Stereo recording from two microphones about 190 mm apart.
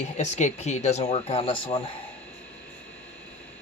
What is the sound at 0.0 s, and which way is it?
Speech, 35° left (ahead or behind).